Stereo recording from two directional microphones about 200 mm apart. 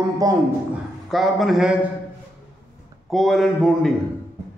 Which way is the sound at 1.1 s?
Centre (ahead or behind).